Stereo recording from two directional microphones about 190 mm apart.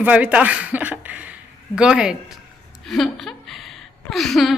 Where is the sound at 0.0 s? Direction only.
10° right (ahead or behind).